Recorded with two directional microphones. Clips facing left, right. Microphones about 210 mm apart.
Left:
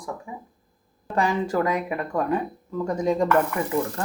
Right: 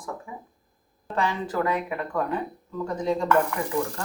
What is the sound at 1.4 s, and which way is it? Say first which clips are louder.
Speech: left 3 dB; 10° left (ahead or behind).